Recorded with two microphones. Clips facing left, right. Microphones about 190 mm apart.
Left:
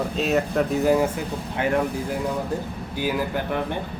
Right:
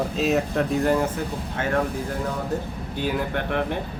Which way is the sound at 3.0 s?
Centre (ahead or behind).